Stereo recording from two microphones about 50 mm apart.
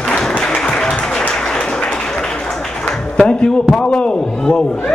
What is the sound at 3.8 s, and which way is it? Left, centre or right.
Speech, centre.